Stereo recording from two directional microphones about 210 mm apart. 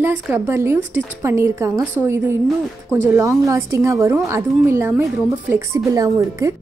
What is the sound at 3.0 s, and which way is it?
A woman's voice, 15° right (ahead or behind).